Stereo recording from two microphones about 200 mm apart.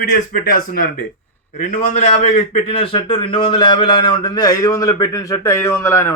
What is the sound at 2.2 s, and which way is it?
A man's voice, 30° left (ahead or behind).